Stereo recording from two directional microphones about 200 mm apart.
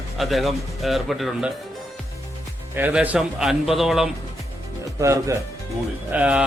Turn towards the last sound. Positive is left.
turn(degrees=-5)  # may be behind; listen again after turning